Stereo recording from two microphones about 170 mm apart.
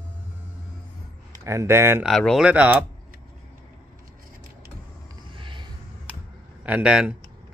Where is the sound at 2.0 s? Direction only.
Centre (ahead or behind).